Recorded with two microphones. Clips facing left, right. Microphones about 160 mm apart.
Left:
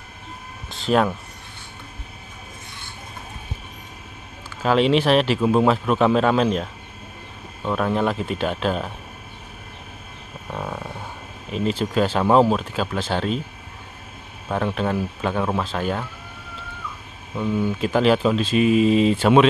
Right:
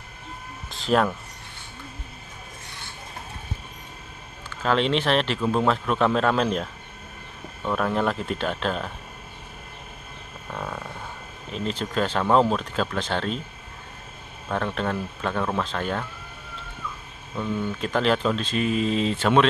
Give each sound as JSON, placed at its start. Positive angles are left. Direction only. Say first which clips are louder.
{"t": 0.7, "sound": "speech", "louder": "left 2 dB", "side_deg": 0}
{"t": 4.6, "sound": "a man's voice", "louder": "left 5 dB", "side_deg": 10}
{"t": 10.5, "sound": "a sound", "louder": "left 3 dB", "side_deg": 15}
{"t": 11.5, "sound": "a man's voice", "louder": "left 5 dB", "side_deg": 5}
{"t": 14.5, "sound": "a man's voice", "louder": "left 3 dB", "side_deg": 5}
{"t": 17.4, "sound": "a man's voice", "louder": "left 5 dB", "side_deg": 10}